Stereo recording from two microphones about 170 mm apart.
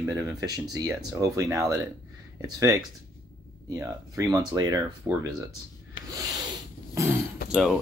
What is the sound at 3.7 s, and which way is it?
Speech, 20° right (ahead or behind).